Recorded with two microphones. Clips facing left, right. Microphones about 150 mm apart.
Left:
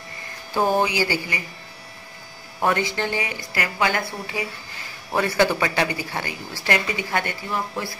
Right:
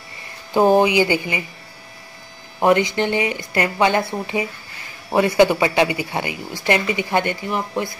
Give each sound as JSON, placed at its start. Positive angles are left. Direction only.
{"t": 0.5, "sound": "a woman's voice", "side_deg": -20}
{"t": 2.6, "sound": "a woman's voice", "side_deg": -20}